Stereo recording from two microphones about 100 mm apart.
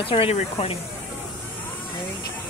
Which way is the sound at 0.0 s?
70° left (ahead or behind).